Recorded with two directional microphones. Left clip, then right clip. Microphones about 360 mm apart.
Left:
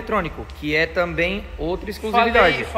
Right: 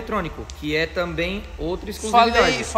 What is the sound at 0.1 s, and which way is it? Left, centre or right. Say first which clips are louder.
Speech: left 4 dB; centre.